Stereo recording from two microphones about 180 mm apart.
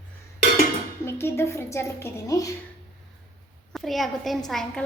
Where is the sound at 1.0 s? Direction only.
15° left (ahead or behind).